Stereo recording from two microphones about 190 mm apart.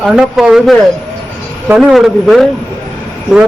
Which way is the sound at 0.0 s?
5° right (ahead or behind).